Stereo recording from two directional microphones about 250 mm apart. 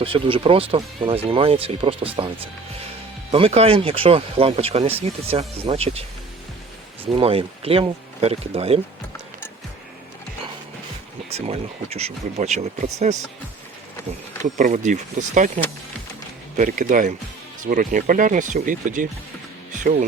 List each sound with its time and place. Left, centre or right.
0.0 s speech: right
11.3 s speech: right
14.6 s speech: right